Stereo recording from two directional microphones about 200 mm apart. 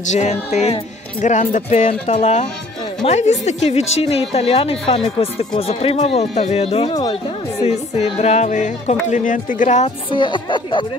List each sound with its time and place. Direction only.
0.0 s speech: 35° left (ahead or behind)